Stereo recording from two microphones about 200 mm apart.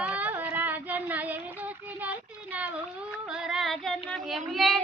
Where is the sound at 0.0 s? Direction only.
5° right (ahead or behind).